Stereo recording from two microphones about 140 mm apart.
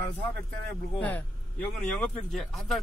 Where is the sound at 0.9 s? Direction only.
10° left (ahead or behind).